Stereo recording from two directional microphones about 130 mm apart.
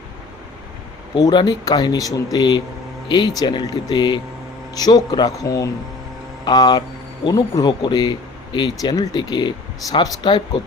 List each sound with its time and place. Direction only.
1.1 s speech: 35° left (ahead or behind)